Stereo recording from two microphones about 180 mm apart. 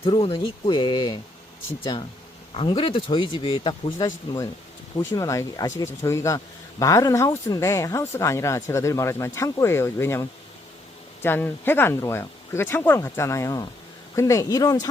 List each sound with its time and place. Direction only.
0.0 s speech: 30° left (ahead or behind)